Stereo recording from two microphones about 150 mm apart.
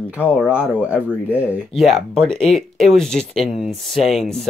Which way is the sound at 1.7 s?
Centre (ahead or behind).